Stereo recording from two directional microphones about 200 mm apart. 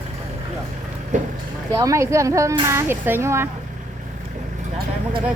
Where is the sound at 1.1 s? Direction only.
40° right (ahead or behind).